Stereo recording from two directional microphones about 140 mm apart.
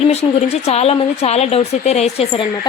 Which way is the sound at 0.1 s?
50° left (ahead or behind).